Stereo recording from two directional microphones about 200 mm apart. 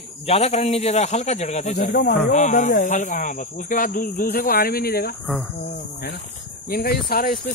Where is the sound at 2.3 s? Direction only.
40° left (ahead or behind).